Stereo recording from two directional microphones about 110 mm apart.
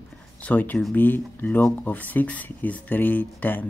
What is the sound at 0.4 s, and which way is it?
A man's voice, 15° left (ahead or behind).